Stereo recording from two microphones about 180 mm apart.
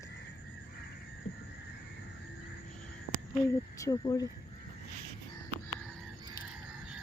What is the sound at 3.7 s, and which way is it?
Speech, 20° left (ahead or behind).